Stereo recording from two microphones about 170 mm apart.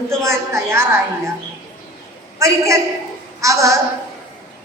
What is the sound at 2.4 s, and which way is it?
A woman's voice, 15° right (ahead or behind).